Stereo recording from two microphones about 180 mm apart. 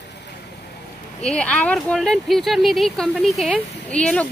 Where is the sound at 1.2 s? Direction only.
5° left (ahead or behind).